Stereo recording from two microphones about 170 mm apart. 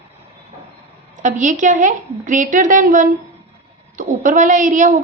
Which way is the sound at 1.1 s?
45° right (ahead or behind).